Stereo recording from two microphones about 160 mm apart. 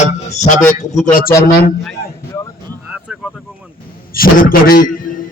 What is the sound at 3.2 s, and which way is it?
Vehicle, 5° right (ahead or behind).